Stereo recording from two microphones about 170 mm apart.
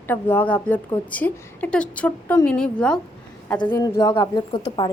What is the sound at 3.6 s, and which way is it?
Speech, 15° left (ahead or behind).